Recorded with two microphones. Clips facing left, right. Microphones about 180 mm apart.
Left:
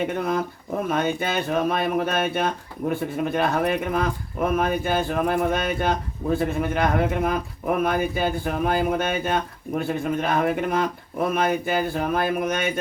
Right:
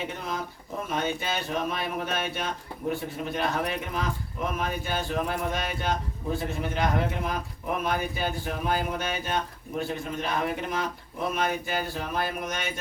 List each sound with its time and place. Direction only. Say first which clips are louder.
0.1 s a man's voice: left 9 dB; 55° left (ahead or behind)